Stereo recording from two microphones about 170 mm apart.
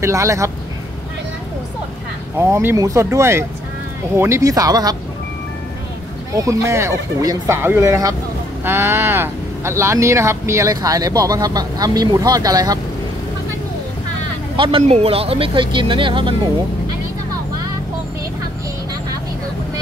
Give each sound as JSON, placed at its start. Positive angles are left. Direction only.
{"t": 0.0, "sound": "speech", "side_deg": -20}
{"t": 2.3, "sound": "speech", "side_deg": -15}
{"t": 6.3, "sound": "speech", "side_deg": -20}
{"t": 14.6, "sound": "speech", "side_deg": -35}